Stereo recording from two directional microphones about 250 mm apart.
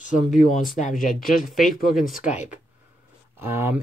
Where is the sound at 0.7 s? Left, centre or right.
Left.